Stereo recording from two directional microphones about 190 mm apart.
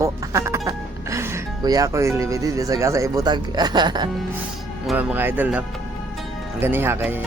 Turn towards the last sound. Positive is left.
turn(degrees=-10)  # may be behind; listen again after turning